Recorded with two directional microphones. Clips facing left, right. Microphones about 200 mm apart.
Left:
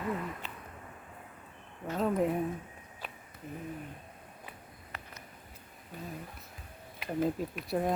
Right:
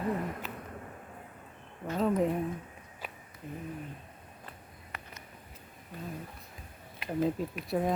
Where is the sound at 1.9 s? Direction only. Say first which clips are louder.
Right 1 dB; centre (ahead or behind).